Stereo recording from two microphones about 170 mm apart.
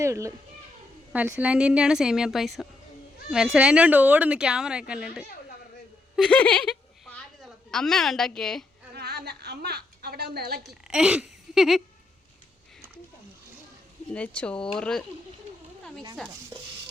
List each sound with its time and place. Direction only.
0.0 s a child's voice: 15° right (ahead or behind); by 8.6 s 5° left (ahead or behind)
8.9 s a woman's voice: 70° right (ahead or behind)
10.7 s speech: 5° right (ahead or behind)
14.1 s speech: 5° left (ahead or behind)